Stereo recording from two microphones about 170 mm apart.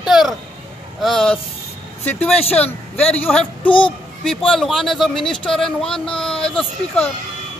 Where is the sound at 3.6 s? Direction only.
30° left (ahead or behind).